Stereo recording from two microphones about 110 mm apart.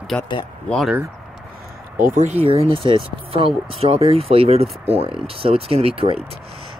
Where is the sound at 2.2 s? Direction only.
80° right.